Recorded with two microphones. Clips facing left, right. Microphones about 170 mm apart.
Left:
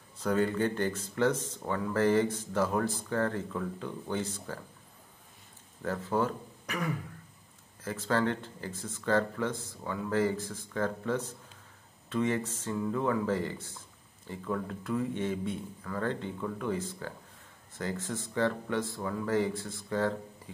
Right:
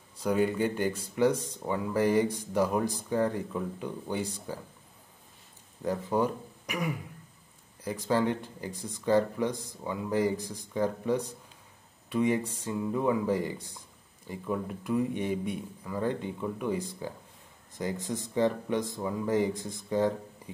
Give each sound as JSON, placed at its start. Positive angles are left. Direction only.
{"t": 0.2, "sound": "speech", "side_deg": -10}
{"t": 5.8, "sound": "speech", "side_deg": -15}